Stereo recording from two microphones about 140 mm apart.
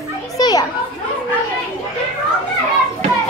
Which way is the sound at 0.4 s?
30° left (ahead or behind).